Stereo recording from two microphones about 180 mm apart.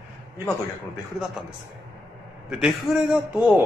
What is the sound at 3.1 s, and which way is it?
Speech, centre (ahead or behind).